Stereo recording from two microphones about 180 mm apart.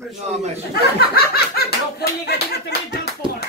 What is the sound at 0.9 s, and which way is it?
Speech, 60° left (ahead or behind).